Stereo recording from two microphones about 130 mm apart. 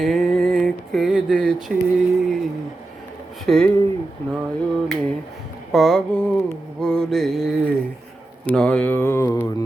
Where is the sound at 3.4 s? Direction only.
5° left (ahead or behind).